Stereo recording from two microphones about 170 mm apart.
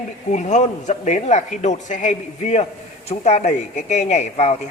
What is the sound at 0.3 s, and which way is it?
A woman's voice, 45° left (ahead or behind).